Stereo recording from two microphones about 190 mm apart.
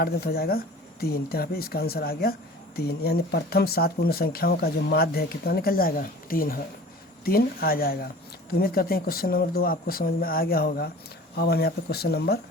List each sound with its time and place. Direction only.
0.0 s speech: 55° left (ahead or behind)